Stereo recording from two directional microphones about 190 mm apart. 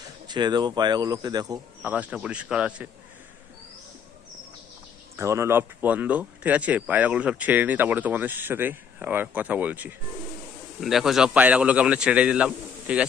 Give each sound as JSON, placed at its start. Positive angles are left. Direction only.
{"t": 0.3, "sound": "speech", "side_deg": -20}
{"t": 1.8, "sound": "a man's voice", "side_deg": -10}
{"t": 5.1, "sound": "a man's voice", "side_deg": -15}